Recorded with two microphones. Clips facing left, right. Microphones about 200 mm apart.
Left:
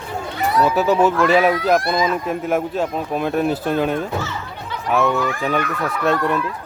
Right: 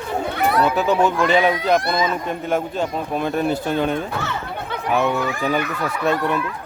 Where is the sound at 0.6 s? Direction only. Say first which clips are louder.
Left 5 dB; 5° left (ahead or behind).